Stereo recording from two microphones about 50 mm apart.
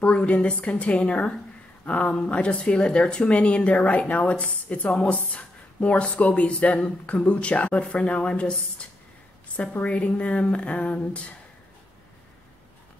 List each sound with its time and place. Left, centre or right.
0.0 s a woman's voice: left